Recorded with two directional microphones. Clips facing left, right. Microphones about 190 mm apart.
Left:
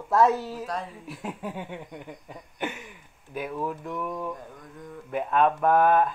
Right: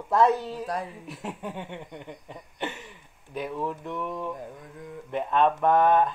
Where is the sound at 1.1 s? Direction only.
Centre (ahead or behind).